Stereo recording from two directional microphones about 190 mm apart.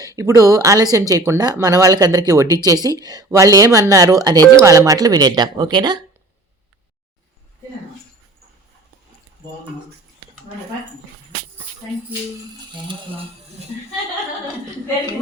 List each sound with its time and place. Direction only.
0.0 s speech: 15° right (ahead or behind)